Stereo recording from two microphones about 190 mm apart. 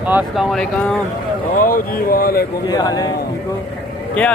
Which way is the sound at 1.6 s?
50° left (ahead or behind).